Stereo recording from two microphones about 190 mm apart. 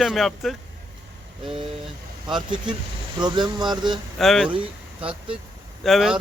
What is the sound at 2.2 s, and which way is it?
Speech, 25° right (ahead or behind).